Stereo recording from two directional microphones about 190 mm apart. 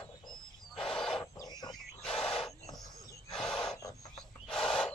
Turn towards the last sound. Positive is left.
turn(degrees=5)  # may be behind; listen again after turning